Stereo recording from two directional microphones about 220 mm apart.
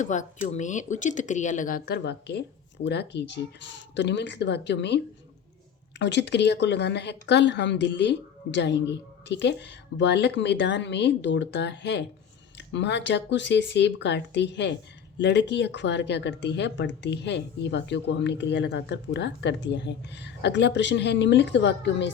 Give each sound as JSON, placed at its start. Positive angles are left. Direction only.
{"t": 0.0, "sound": "speech", "side_deg": 35}
{"t": 6.0, "sound": "speech", "side_deg": 55}